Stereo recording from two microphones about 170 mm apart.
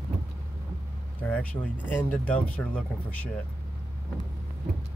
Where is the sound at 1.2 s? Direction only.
10° left (ahead or behind).